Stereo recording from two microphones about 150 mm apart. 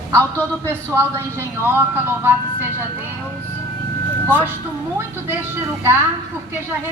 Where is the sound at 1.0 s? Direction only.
20° right (ahead or behind).